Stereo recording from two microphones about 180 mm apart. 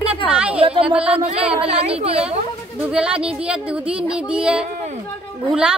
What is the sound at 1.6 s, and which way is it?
Speech, 35° right (ahead or behind).